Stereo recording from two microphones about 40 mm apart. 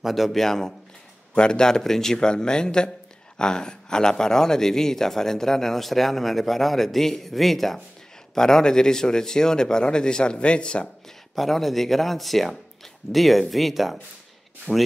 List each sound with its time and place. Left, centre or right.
0.0 s speech: centre
1.3 s speech: left; by 7.8 s centre
8.4 s speech: centre
11.3 s speech: centre